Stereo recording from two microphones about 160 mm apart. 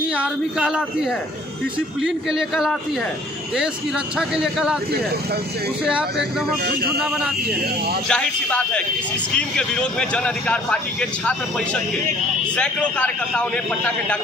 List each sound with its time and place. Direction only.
0.1 s speech: 5° right (ahead or behind)
4.2 s speech: 5° right (ahead or behind)
5.9 s speech: 5° right (ahead or behind)
6.6 s a man's voice: 70° right (ahead or behind)
8.1 s speech: 5° left (ahead or behind)